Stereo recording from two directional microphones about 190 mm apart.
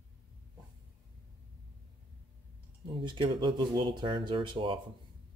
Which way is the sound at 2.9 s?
25° right (ahead or behind).